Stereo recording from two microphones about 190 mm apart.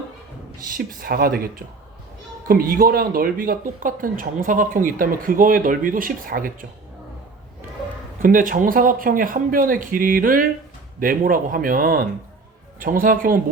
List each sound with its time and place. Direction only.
0.6 s speech: 50° right (ahead or behind)
8.2 s speech: 45° right (ahead or behind)